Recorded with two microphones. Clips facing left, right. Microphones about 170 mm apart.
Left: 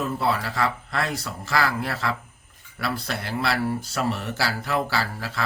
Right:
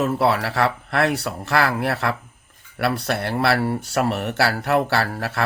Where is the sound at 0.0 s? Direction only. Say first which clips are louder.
Right 5 dB; 75° right (ahead or behind).